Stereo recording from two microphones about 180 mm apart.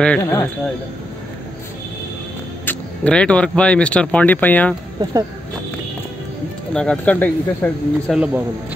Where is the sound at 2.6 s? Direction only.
10° left (ahead or behind).